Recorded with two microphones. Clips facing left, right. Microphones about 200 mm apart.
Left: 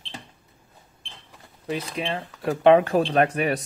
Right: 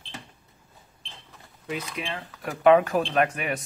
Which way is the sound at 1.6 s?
30° left (ahead or behind).